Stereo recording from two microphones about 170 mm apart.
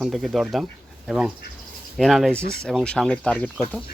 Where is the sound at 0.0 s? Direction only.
Centre (ahead or behind).